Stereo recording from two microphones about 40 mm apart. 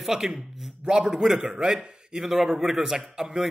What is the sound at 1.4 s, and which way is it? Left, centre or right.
A man's voice, centre.